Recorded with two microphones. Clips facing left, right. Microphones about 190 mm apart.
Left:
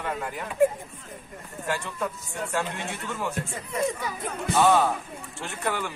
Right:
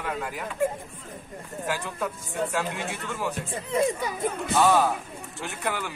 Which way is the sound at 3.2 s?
5° right (ahead or behind).